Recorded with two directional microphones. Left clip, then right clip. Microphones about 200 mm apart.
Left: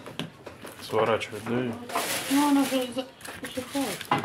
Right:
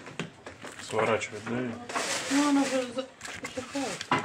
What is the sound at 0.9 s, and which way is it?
Speech, 5° left (ahead or behind).